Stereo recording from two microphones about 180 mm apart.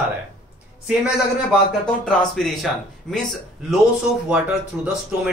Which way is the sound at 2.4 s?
Centre (ahead or behind).